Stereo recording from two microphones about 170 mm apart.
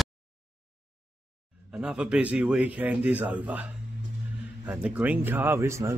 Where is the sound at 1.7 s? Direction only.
5° right (ahead or behind).